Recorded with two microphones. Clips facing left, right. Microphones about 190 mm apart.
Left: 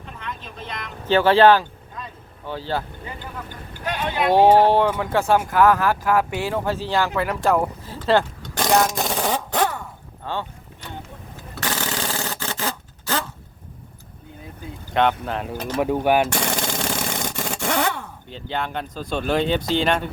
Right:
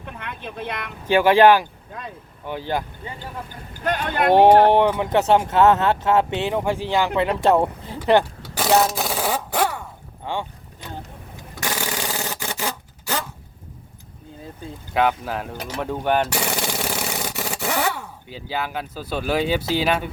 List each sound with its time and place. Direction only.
0.0 s vehicle: 60° right (ahead or behind)
1.0 s speech: 15° right (ahead or behind)
3.8 s speech: 50° right (ahead or behind)
4.4 s speech: 10° left (ahead or behind)
4.7 s speech: 20° right (ahead or behind)
7.9 s speech: 15° right (ahead or behind)
8.5 s a sound: 5° right (ahead or behind)
10.3 s speech: 15° right (ahead or behind)
11.5 s a sound: 10° right (ahead or behind)
14.9 s speech: 5° right (ahead or behind)
15.8 s speech: 10° left (ahead or behind)
16.3 s a sound: 10° right (ahead or behind)